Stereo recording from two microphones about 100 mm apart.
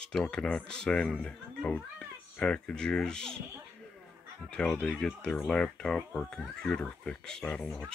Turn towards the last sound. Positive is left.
turn(degrees=10)  # may be behind; listen again after turning